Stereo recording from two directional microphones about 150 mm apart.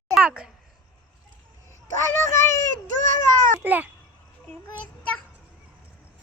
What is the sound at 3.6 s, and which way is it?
Speech, 10° right (ahead or behind).